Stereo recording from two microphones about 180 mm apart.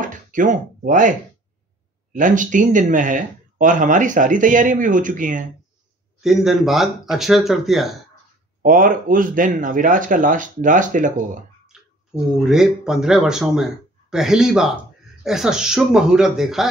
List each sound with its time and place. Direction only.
0.0 s a sound: 45° right (ahead or behind)
2.1 s speech: 45° right (ahead or behind)
6.2 s speech: centre (ahead or behind)
8.6 s speech: 50° right (ahead or behind)
11.6 s speech: 5° right (ahead or behind)